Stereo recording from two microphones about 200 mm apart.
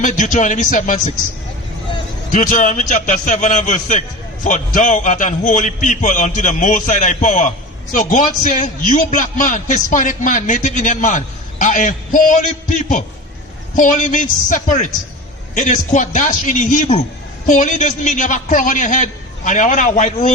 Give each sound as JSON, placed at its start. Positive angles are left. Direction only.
{"t": 0.0, "sound": "a man's voice", "side_deg": 40}
{"t": 2.3, "sound": "a man's voice", "side_deg": 40}